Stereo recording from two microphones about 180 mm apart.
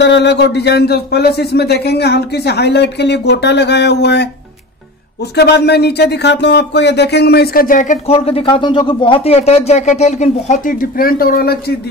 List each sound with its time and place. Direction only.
0.0 s speech: 75° left (ahead or behind)
5.3 s speech: 65° left (ahead or behind)